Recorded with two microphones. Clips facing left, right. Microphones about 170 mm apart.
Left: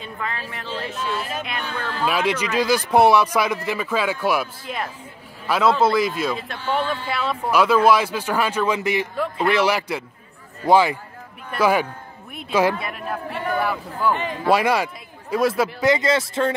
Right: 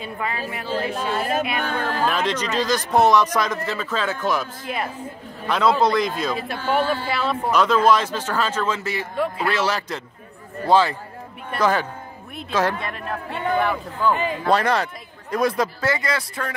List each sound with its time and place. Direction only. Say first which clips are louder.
0.0 s speech: right 3 dB; 10° right (ahead or behind)
0.8 s speech: right 2 dB; 50° right (ahead or behind)
2.0 s speech: left 5 dB; 10° left (ahead or behind)
4.6 s speech: right 2 dB; 5° right (ahead or behind)
5.0 s a man's voice: right 1 dB; 5° left (ahead or behind)
9.1 s a man's voice: even; centre (ahead or behind)
9.5 s a man's voice: left 4 dB; 15° left (ahead or behind)
15.8 s speech: left 5 dB; 20° left (ahead or behind)